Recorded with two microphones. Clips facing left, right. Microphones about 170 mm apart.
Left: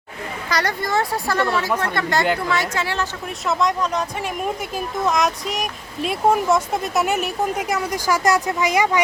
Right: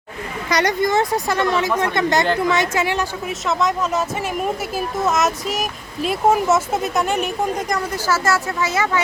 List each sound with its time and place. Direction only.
0.5 s a woman's voice: 20° right (ahead or behind)
3.2 s speech: centre (ahead or behind)
5.0 s speech: 5° right (ahead or behind)
7.0 s speech: 5° left (ahead or behind)